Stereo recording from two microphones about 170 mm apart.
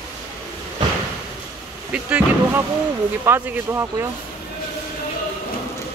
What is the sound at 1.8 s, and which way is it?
Speech, 5° right (ahead or behind).